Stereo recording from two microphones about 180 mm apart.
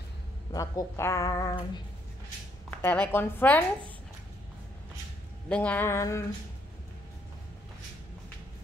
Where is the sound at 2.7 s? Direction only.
10° left (ahead or behind).